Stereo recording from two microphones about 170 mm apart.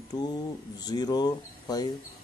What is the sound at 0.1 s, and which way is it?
Speech, 25° left (ahead or behind).